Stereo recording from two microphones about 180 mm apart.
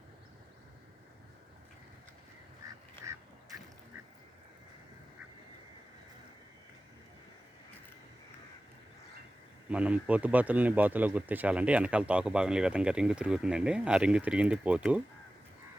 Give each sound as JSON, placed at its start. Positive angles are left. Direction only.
{"t": 3.0, "sound": "duck", "side_deg": -15}
{"t": 9.6, "sound": "speech", "side_deg": -5}